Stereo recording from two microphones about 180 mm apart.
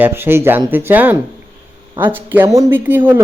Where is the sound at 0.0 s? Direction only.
10° right (ahead or behind).